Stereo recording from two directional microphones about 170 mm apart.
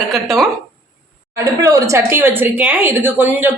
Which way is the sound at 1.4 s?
20° right (ahead or behind).